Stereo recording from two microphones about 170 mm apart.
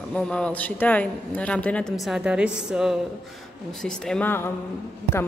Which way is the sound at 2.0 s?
5° right (ahead or behind).